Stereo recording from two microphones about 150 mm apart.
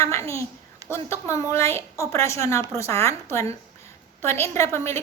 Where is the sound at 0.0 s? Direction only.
20° left (ahead or behind).